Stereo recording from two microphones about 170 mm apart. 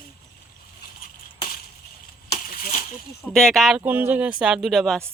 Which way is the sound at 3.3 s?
Centre (ahead or behind).